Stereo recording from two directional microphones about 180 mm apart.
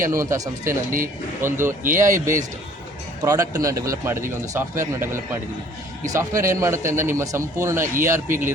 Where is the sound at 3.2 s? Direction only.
20° right (ahead or behind).